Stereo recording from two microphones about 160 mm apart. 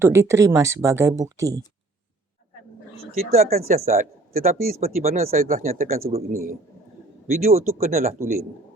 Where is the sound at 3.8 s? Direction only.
45° right (ahead or behind).